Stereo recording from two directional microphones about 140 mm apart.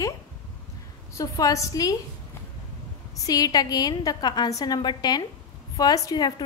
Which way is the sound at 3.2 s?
25° left (ahead or behind).